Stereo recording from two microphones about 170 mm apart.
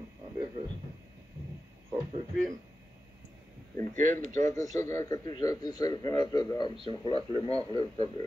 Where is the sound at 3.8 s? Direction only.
50° right (ahead or behind).